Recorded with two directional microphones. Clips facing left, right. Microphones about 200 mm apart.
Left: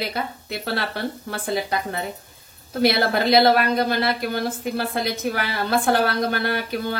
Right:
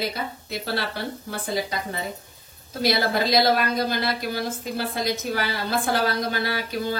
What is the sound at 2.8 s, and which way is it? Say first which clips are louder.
A woman's voice: left 3 dB; 60° left (ahead or behind).